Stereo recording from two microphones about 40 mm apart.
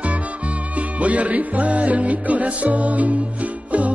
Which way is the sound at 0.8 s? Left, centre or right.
Right.